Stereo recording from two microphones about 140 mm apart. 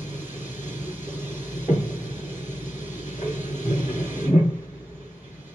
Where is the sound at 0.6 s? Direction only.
60° left (ahead or behind).